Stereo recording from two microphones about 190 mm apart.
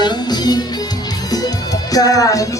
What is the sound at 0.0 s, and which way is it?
Music, 20° left (ahead or behind).